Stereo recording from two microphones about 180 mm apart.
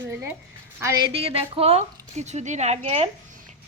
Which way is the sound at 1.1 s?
30° right (ahead or behind).